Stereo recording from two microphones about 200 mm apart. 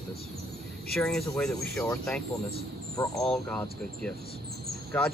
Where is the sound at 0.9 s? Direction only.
5° left (ahead or behind).